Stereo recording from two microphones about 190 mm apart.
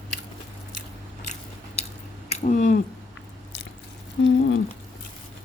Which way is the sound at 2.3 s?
40° left (ahead or behind).